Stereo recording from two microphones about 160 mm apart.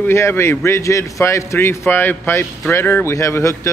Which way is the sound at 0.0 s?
15° left (ahead or behind).